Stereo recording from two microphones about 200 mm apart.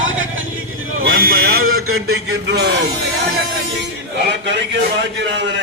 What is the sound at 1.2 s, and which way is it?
Speech, 50° right (ahead or behind).